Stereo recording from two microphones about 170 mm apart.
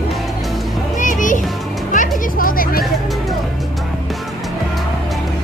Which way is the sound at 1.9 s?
50° left (ahead or behind).